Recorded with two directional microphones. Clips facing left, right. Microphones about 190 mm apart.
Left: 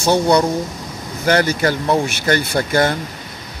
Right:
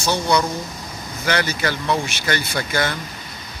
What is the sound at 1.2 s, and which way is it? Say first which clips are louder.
Speech: left 6 dB; 50° left (ahead or behind).